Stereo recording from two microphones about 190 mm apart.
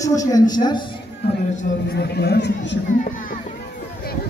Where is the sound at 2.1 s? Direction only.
60° left (ahead or behind).